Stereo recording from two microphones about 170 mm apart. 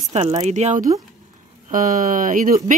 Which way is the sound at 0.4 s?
40° right (ahead or behind).